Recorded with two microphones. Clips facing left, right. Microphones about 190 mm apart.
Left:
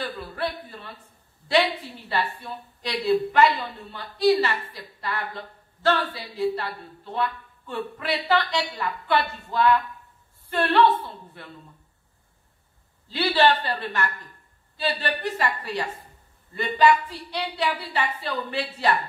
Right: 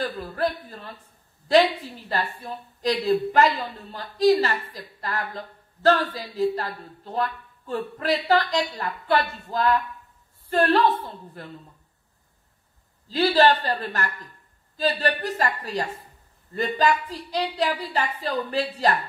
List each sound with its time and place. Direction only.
0.0 s a woman's voice: 40° right (ahead or behind)
13.1 s a woman's voice: 40° right (ahead or behind)